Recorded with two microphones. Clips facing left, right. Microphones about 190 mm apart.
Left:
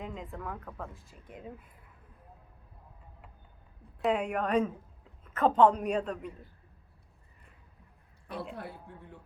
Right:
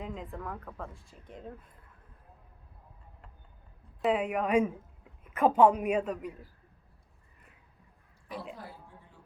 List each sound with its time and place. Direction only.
0.0 s speech: centre (ahead or behind)
4.0 s a man's voice: centre (ahead or behind)
8.5 s speech: 60° left (ahead or behind)